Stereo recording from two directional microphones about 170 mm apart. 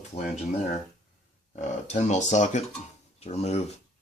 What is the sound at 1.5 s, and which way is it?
Speech, 45° left (ahead or behind).